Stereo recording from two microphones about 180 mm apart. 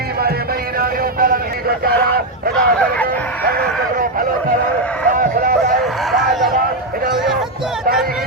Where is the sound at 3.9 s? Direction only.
50° right (ahead or behind).